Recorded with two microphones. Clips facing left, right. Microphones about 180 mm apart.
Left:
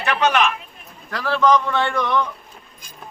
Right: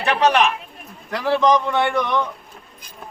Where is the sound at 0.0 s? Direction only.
35° right (ahead or behind).